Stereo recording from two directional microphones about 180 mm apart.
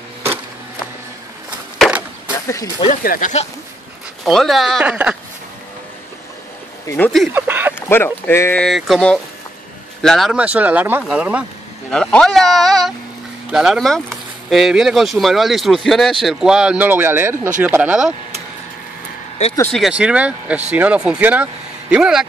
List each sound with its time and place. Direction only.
1.8 s chop: 5° right (ahead or behind)
2.4 s speech: 15° left (ahead or behind)
3.0 s speech: 50° left (ahead or behind)
4.2 s speech: centre (ahead or behind)
6.9 s speech: 5° left (ahead or behind)
7.3 s speech: 10° right (ahead or behind)
7.9 s speech: 10° left (ahead or behind); by 11.4 s 5° right (ahead or behind)
11.9 s speech: 5° left (ahead or behind)
19.7 s speech: 5° right (ahead or behind)